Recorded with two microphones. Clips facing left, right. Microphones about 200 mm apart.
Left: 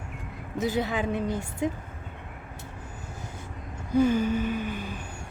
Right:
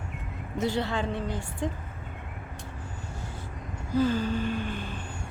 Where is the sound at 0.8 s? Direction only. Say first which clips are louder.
Left 2 dB; 10° left (ahead or behind).